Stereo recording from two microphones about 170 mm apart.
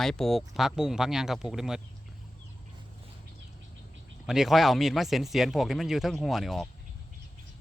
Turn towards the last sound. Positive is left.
turn(degrees=0)  # may be behind; listen again after turning